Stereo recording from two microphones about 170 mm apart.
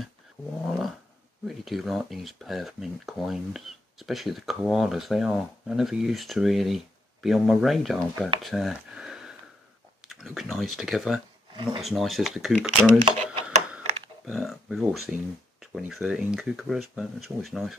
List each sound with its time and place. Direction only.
0.7 s a sound: centre (ahead or behind)
1.5 s speech: centre (ahead or behind)
11.5 s speech: 30° right (ahead or behind)
11.8 s speech: centre (ahead or behind)
13.0 s a sound: 35° right (ahead or behind)
14.2 s speech: centre (ahead or behind)